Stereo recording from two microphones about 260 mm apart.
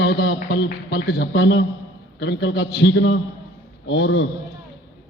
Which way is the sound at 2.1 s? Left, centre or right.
Left.